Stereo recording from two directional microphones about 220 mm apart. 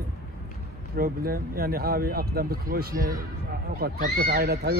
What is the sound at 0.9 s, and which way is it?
Speech, 40° right (ahead or behind).